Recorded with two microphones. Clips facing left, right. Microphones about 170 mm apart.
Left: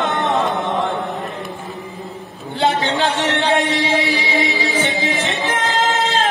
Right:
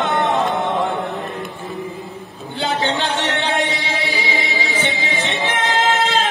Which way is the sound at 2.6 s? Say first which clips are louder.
Left 3 dB; 40° left (ahead or behind).